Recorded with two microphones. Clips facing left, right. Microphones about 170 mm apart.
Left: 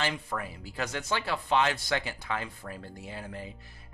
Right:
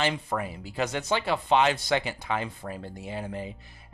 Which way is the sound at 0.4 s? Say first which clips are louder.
Right 5 dB; 20° right (ahead or behind).